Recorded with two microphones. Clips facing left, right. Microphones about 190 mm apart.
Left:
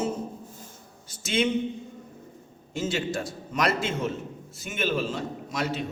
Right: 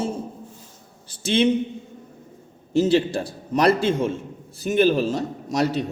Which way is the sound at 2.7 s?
35° right (ahead or behind).